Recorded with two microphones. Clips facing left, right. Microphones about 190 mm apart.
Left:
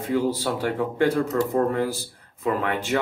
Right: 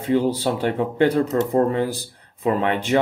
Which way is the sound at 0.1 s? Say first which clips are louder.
Right 4 dB; 25° right (ahead or behind).